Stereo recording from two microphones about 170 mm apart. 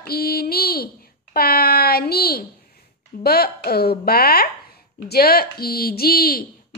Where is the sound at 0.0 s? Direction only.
65° left (ahead or behind).